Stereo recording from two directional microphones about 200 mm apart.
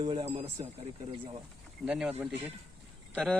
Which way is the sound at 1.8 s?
5° right (ahead or behind).